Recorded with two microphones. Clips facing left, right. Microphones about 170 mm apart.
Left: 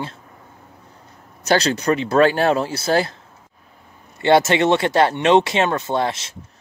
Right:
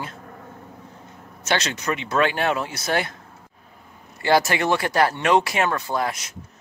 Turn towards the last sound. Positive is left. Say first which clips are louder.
# left 4 dB
turn(degrees=30)  # may be behind; listen again after turning